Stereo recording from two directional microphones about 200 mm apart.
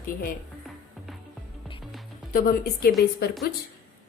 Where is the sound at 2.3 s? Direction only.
50° left (ahead or behind).